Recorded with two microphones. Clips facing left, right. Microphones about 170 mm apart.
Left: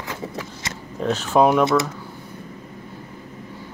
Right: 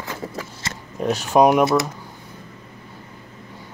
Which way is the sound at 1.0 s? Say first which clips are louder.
Right 1 dB; 15° right (ahead or behind).